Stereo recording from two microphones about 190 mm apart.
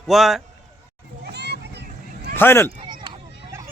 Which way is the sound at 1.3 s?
60° right (ahead or behind).